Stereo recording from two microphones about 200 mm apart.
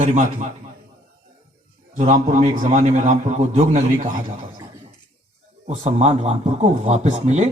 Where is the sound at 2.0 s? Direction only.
35° right (ahead or behind).